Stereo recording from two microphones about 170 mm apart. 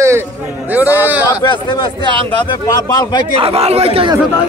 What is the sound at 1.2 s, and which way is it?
Speech, 25° left (ahead or behind).